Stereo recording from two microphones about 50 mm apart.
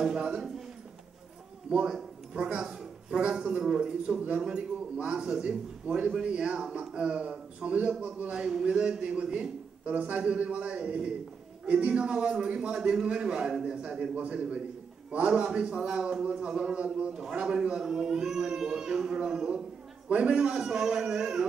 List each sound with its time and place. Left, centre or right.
0.0 s a man's voice: centre
1.7 s speech: centre
2.6 s a sound: centre
3.2 s a man's voice: right